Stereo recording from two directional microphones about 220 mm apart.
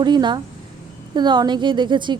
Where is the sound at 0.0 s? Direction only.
20° right (ahead or behind).